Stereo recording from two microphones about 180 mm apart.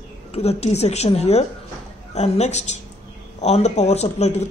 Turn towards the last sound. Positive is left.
turn(degrees=40)  # may be behind; listen again after turning